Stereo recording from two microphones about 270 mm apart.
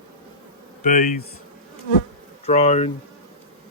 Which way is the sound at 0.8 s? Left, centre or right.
Left.